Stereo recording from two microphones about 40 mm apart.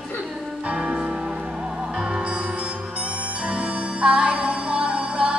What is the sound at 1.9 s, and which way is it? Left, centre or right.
Music, right.